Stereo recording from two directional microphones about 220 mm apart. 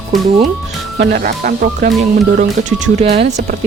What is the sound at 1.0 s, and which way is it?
Speech, 40° right (ahead or behind).